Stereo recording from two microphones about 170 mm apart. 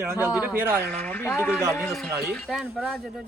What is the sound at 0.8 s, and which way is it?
A man's voice, 10° left (ahead or behind).